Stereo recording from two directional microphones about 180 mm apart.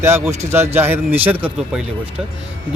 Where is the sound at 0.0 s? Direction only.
15° right (ahead or behind).